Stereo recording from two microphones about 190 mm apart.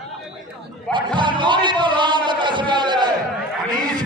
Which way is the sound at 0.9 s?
25° right (ahead or behind).